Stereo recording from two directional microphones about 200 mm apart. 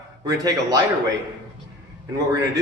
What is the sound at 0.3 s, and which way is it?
Speech, 20° right (ahead or behind).